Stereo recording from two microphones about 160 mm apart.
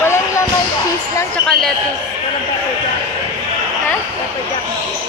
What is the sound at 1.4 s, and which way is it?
Speech, 5° left (ahead or behind).